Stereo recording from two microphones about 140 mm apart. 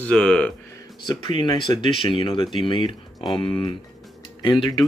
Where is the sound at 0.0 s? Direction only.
5° left (ahead or behind).